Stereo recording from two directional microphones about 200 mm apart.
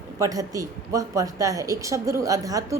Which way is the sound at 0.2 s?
15° right (ahead or behind).